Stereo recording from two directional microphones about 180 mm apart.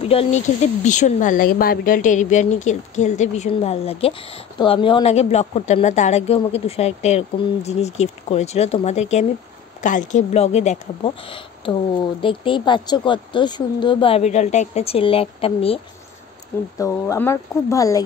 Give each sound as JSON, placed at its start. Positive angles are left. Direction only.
{"t": 0.0, "sound": "speech", "side_deg": 35}
{"t": 11.2, "sound": "a woman's voice", "side_deg": 30}
{"t": 16.7, "sound": "speech", "side_deg": 15}